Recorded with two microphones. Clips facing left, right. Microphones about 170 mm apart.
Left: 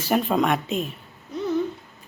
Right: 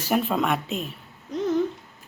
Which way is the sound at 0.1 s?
5° right (ahead or behind).